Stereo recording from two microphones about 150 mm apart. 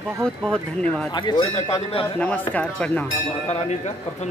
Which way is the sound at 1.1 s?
30° left (ahead or behind).